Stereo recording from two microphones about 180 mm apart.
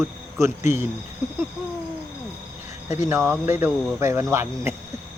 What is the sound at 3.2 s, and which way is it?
Speech, 10° right (ahead or behind).